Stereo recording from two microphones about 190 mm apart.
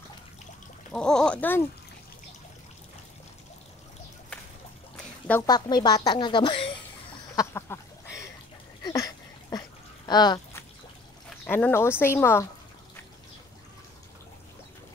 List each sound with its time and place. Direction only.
0.9 s speech: 5° left (ahead or behind)
5.5 s a woman's voice: 20° left (ahead or behind)
7.3 s a sound: 15° left (ahead or behind)
11.4 s speech: 10° left (ahead or behind)